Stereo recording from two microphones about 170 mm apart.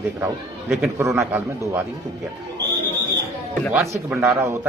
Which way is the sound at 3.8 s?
15° right (ahead or behind).